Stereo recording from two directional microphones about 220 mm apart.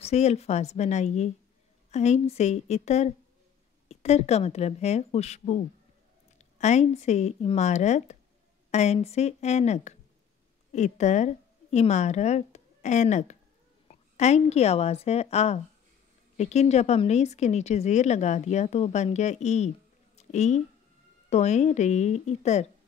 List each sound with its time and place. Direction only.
0.0 s a woman's voice: 30° left (ahead or behind)